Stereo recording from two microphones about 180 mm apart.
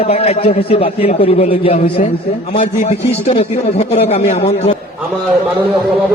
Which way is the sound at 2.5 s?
50° left (ahead or behind).